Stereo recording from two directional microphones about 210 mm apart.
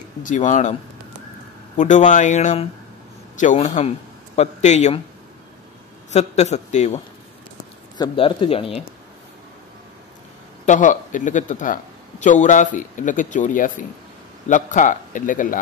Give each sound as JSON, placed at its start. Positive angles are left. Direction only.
{"t": 0.2, "sound": "a man's voice", "side_deg": 35}
{"t": 1.8, "sound": "a man's voice", "side_deg": 35}
{"t": 6.1, "sound": "a man's voice", "side_deg": 35}
{"t": 8.0, "sound": "speech", "side_deg": 25}
{"t": 10.6, "sound": "a man's voice", "side_deg": 35}